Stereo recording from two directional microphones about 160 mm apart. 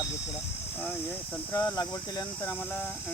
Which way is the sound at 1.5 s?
25° left (ahead or behind).